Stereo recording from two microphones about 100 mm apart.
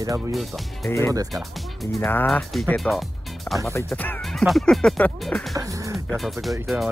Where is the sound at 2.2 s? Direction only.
5° left (ahead or behind).